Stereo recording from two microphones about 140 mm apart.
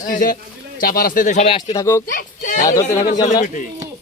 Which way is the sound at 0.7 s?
90° left.